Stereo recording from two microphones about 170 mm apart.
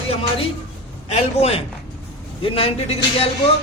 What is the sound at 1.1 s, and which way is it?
A man's voice, 35° left (ahead or behind).